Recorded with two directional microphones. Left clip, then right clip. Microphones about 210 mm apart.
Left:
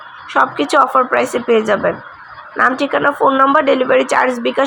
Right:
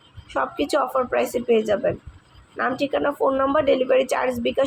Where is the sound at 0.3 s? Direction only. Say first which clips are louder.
Left 10 dB; 15° left (ahead or behind).